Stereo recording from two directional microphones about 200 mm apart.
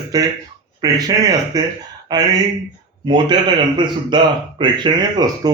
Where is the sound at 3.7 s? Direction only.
25° right (ahead or behind).